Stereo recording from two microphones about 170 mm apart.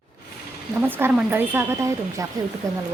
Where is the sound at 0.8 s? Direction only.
10° right (ahead or behind).